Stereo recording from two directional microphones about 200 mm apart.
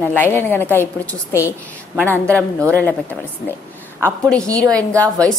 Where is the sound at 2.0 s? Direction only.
5° left (ahead or behind).